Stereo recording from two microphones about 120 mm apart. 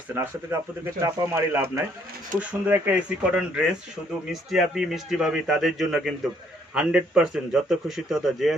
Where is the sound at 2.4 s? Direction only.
15° right (ahead or behind).